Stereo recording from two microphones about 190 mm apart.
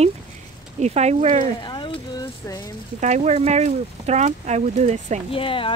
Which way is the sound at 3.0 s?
35° right (ahead or behind).